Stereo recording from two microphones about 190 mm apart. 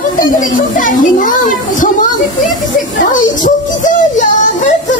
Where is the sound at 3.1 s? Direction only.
40° left (ahead or behind).